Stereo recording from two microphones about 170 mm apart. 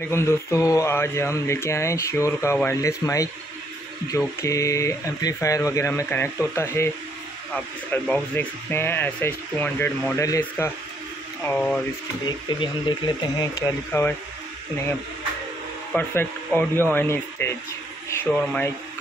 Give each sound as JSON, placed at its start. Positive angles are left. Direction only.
{"t": 0.1, "sound": "speech", "side_deg": 15}
{"t": 12.3, "sound": "speech", "side_deg": 25}
{"t": 14.0, "sound": "speech", "side_deg": 15}
{"t": 15.9, "sound": "speech", "side_deg": 10}